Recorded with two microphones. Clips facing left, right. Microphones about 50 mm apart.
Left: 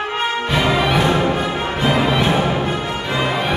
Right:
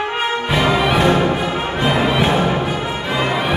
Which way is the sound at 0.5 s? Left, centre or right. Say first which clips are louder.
Right 1 dB; centre.